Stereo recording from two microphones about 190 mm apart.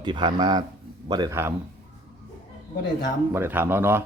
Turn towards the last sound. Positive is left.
turn(degrees=-10)  # may be behind; listen again after turning